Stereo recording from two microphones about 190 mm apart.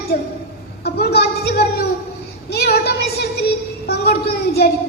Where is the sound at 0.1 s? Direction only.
60° left (ahead or behind).